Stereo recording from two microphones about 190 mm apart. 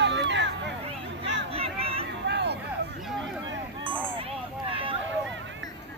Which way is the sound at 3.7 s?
25° right (ahead or behind).